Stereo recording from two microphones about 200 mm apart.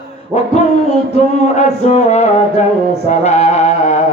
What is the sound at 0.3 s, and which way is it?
Music, 35° left (ahead or behind).